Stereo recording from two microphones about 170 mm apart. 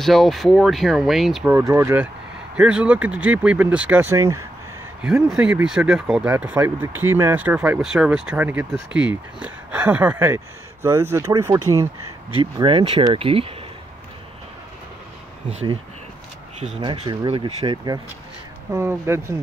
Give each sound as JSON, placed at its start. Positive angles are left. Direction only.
{"t": 0.0, "sound": "speech", "side_deg": 0}
{"t": 1.4, "sound": "speech", "side_deg": -20}
{"t": 5.0, "sound": "speech", "side_deg": -5}
{"t": 12.5, "sound": "speech", "side_deg": -30}
{"t": 16.8, "sound": "speech", "side_deg": -40}